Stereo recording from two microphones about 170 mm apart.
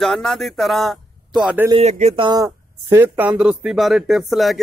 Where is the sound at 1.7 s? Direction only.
40° right (ahead or behind).